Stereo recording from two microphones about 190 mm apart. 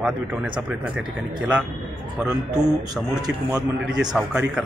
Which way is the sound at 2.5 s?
20° right (ahead or behind).